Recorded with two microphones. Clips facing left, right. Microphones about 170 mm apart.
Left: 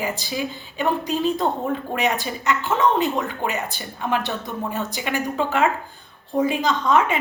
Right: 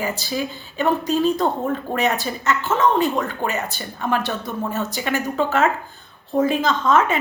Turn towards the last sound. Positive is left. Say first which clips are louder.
# right 1 dB
turn(degrees=15)  # may be behind; listen again after turning